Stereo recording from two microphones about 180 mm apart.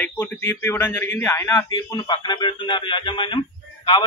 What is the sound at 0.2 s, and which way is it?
A man's voice, 10° left (ahead or behind).